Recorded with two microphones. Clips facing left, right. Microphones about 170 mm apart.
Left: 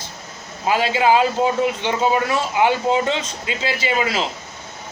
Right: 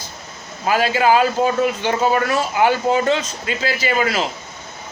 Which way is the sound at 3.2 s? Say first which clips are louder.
Right 2 dB; 20° left (ahead or behind).